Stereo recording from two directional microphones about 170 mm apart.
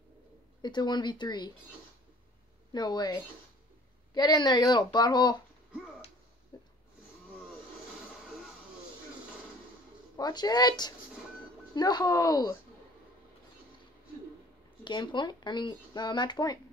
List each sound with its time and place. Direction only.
0.6 s speech: 25° left (ahead or behind)
2.7 s speech: 25° left (ahead or behind)
6.5 s a sound: 20° left (ahead or behind)
10.1 s speech: 25° left (ahead or behind)
14.9 s speech: 25° left (ahead or behind)